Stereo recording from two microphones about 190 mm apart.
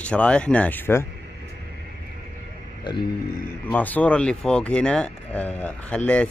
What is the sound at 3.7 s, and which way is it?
Speech, 10° left (ahead or behind).